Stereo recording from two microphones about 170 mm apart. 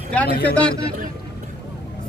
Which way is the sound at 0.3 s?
65° left (ahead or behind).